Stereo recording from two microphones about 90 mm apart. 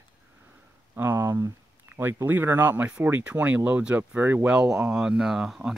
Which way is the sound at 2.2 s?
20° right (ahead or behind).